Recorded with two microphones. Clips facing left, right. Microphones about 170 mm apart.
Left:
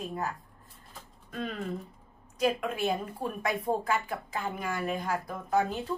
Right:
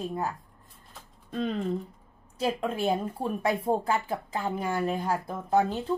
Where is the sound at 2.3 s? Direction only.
30° right (ahead or behind).